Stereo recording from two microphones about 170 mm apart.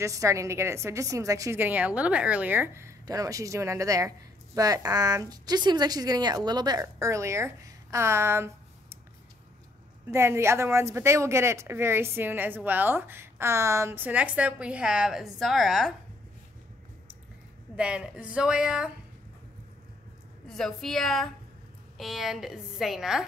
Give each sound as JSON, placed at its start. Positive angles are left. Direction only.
{"t": 0.0, "sound": "a woman's voice", "side_deg": -20}
{"t": 10.1, "sound": "speech", "side_deg": -15}
{"t": 17.7, "sound": "a woman's voice", "side_deg": -5}
{"t": 20.4, "sound": "a woman's voice", "side_deg": 0}